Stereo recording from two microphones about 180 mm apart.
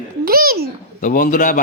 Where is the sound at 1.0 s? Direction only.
50° left (ahead or behind).